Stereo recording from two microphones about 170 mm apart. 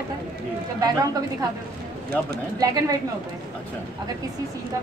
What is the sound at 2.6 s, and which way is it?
Speech, 20° right (ahead or behind).